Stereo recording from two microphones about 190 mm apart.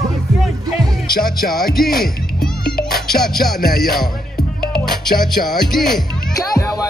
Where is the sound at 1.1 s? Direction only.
50° left (ahead or behind).